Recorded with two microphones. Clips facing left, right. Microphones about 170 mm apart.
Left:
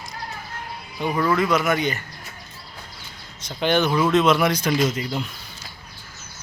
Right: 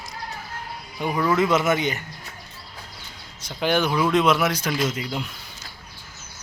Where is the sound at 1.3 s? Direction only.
25° right (ahead or behind).